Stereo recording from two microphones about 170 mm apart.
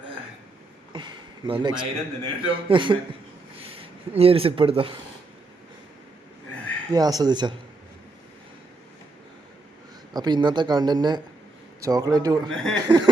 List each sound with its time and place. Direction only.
0.9 s a man's voice: 30° right (ahead or behind)
6.9 s a man's voice: 25° right (ahead or behind)
10.1 s a man's voice: 25° right (ahead or behind)
12.5 s speech: 5° left (ahead or behind)